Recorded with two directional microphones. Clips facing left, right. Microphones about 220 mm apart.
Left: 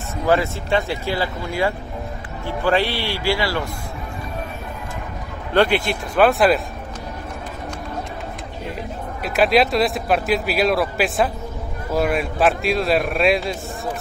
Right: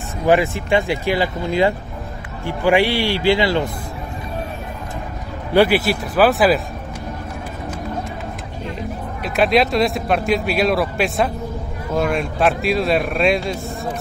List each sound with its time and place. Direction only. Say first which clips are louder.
0.3 s speech: right 3 dB; 15° right (ahead or behind)
5.5 s a man's voice: right 3 dB; 5° right (ahead or behind)
9.2 s a man's voice: even; centre (ahead or behind)